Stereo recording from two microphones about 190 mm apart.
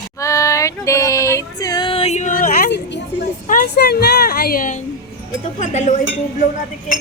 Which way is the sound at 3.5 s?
50° left (ahead or behind).